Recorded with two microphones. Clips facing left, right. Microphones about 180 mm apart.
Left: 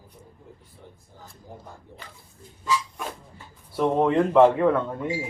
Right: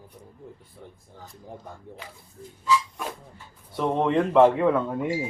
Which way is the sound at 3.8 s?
5° left (ahead or behind).